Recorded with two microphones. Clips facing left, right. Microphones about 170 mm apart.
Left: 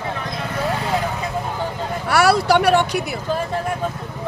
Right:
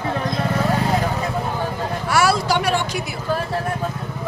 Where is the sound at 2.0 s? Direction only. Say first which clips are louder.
Left 3 dB; 60° left (ahead or behind).